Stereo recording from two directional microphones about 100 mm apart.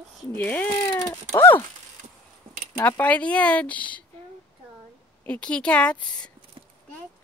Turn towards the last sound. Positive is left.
turn(degrees=10)  # may be behind; listen again after turning